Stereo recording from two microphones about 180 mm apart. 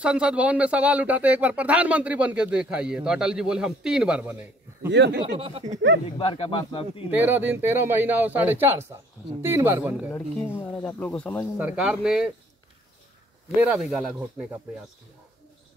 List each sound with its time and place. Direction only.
0.0 s speech: 5° right (ahead or behind)
4.9 s speech: 70° right (ahead or behind)
5.4 s speech: 35° right (ahead or behind)
6.0 s a man's voice: 30° left (ahead or behind)
7.1 s speech: 10° right (ahead or behind)
10.1 s speech: 10° left (ahead or behind)
11.5 s a man's voice: 5° right (ahead or behind)
13.6 s speech: 5° right (ahead or behind)